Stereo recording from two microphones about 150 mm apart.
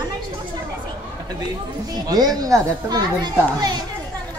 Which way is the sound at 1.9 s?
25° right (ahead or behind).